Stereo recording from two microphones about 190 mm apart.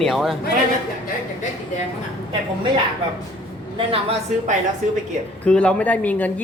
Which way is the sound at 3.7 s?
30° right (ahead or behind).